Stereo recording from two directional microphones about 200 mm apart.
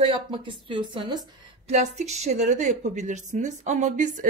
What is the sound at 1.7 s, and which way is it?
A woman's voice, 35° right (ahead or behind).